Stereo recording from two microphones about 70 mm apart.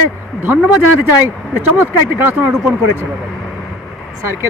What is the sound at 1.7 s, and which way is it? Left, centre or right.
Speech, right.